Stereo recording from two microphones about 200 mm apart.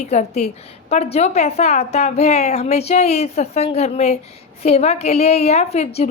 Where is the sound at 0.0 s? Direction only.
35° left (ahead or behind).